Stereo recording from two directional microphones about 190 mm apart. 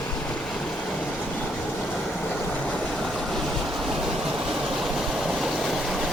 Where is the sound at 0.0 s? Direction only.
5° left (ahead or behind).